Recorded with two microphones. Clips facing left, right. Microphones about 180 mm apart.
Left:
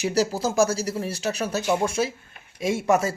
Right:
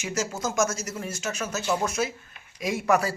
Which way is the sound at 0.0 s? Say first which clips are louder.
Left 6 dB; 35° left (ahead or behind).